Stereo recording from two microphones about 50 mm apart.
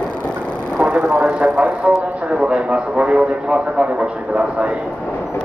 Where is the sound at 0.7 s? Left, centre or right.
Right.